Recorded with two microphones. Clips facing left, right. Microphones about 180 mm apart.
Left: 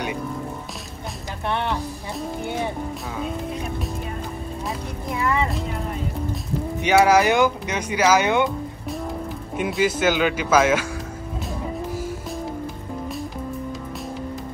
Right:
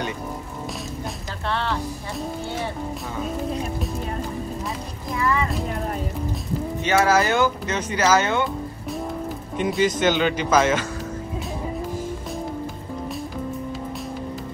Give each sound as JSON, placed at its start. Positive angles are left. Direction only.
{"t": 1.5, "sound": "music", "side_deg": 20}
{"t": 5.1, "sound": "music", "side_deg": 25}
{"t": 6.8, "sound": "speech", "side_deg": 15}
{"t": 9.6, "sound": "speech", "side_deg": 5}